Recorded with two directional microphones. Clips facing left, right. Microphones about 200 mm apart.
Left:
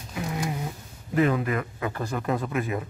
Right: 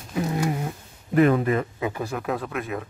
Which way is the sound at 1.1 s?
55° right (ahead or behind).